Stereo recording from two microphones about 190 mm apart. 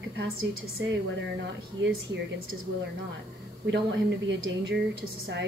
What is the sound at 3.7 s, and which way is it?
Speech, 65° right (ahead or behind).